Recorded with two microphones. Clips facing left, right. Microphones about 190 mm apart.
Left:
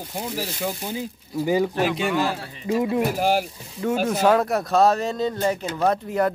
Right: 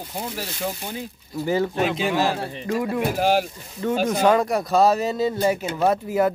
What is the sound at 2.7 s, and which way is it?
Speech, 15° left (ahead or behind).